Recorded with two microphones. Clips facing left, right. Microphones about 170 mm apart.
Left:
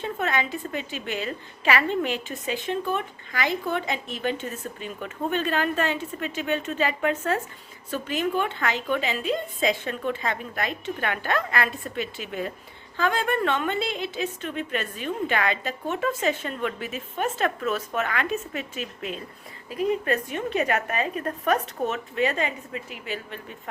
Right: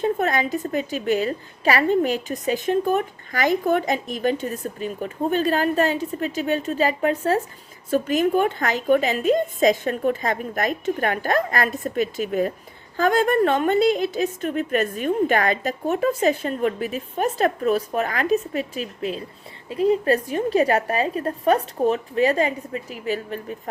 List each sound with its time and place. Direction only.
0.0 s a woman's voice: 40° right (ahead or behind)